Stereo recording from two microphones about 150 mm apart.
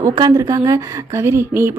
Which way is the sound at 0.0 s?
25° right (ahead or behind).